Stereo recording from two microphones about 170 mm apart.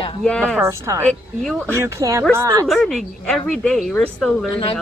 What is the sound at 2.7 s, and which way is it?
Speech, centre (ahead or behind).